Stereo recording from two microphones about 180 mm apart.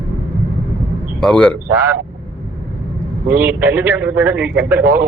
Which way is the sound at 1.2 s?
5° left (ahead or behind).